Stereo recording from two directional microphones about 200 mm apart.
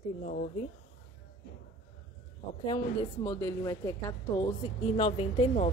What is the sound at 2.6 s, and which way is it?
A woman's voice, 20° left (ahead or behind).